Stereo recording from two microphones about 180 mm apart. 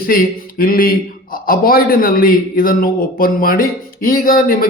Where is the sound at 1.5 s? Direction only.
55° left (ahead or behind).